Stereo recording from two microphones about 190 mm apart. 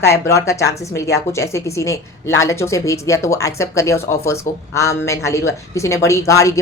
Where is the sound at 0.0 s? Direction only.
15° left (ahead or behind).